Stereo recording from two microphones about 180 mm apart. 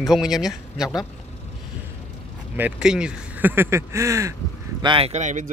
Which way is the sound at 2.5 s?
5° right (ahead or behind).